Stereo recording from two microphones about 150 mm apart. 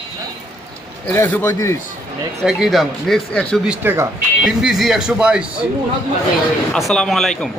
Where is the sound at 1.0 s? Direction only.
15° left (ahead or behind).